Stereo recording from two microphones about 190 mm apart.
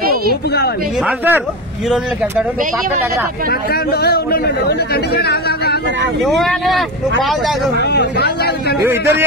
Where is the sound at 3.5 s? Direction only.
55° left (ahead or behind).